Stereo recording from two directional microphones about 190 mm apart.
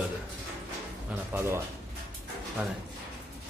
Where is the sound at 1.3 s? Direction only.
15° right (ahead or behind).